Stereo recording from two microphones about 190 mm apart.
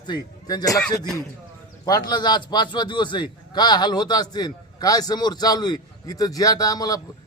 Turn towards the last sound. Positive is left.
turn(degrees=20)  # may be behind; listen again after turning